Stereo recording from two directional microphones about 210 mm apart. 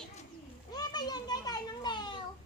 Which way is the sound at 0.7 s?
20° left (ahead or behind).